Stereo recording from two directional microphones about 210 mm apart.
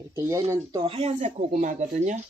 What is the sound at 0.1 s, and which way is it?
Speech, 15° right (ahead or behind).